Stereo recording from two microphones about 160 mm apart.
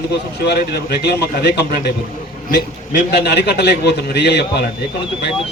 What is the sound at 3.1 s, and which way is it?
A man's voice, 90° left.